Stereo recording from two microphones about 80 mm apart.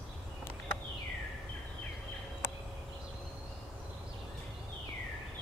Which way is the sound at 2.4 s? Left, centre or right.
Left.